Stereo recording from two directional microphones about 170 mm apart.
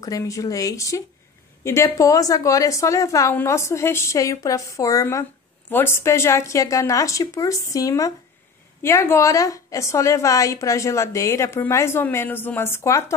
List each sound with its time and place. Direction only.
0.0 s a woman's voice: 20° left (ahead or behind)